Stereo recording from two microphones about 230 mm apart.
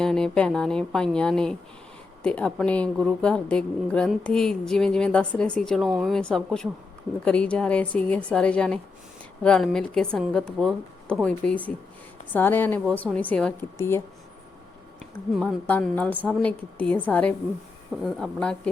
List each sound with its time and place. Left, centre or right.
0.0 s a woman's voice: centre
15.3 s a woman's voice: centre